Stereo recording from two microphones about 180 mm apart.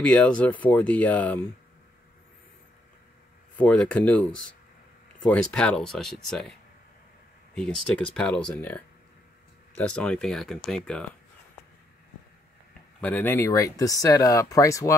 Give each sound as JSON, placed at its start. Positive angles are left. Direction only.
{"t": 0.0, "sound": "speech", "side_deg": 5}
{"t": 3.5, "sound": "speech", "side_deg": 5}
{"t": 7.5, "sound": "speech", "side_deg": 0}
{"t": 13.0, "sound": "speech", "side_deg": 10}